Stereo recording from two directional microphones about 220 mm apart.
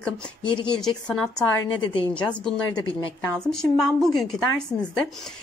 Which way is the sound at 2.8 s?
20° left (ahead or behind).